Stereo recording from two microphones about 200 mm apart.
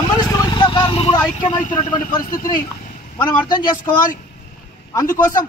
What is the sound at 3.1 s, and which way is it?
A man's voice, 20° left (ahead or behind).